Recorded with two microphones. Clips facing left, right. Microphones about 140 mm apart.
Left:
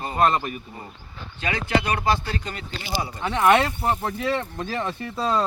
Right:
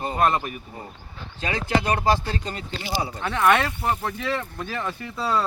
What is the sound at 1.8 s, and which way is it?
Speech, 35° right (ahead or behind).